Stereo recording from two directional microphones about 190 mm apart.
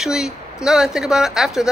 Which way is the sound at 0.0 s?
5° right (ahead or behind).